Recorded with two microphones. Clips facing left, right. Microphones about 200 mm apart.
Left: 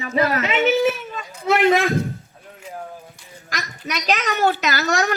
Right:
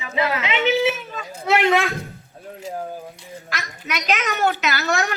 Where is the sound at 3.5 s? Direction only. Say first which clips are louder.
Left 1 dB; 40° left (ahead or behind).